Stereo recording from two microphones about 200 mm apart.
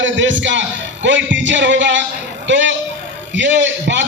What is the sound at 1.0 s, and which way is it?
Music, 65° right (ahead or behind).